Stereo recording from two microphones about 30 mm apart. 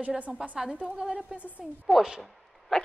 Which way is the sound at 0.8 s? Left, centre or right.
Right.